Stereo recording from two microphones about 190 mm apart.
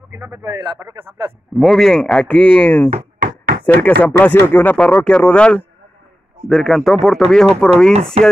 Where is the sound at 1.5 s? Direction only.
Centre (ahead or behind).